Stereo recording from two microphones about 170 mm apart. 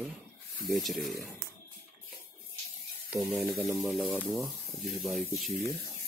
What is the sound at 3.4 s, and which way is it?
Speech, centre (ahead or behind).